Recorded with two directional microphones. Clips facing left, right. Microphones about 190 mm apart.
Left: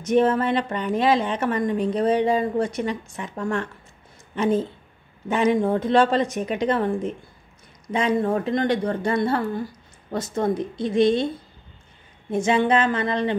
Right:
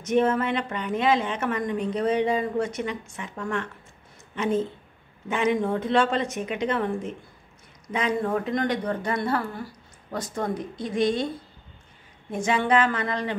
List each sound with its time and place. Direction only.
0.0 s a woman's voice: 35° left (ahead or behind)
5.3 s a woman's voice: 35° left (ahead or behind)
12.3 s a woman's voice: 25° left (ahead or behind)